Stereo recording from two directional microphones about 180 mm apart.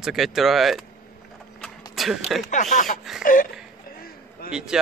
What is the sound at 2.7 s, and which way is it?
Speech, 45° left (ahead or behind).